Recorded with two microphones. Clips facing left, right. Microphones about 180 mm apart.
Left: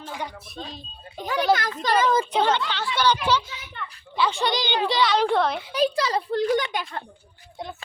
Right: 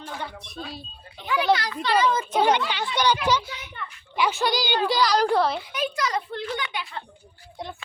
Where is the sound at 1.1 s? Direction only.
40° left (ahead or behind).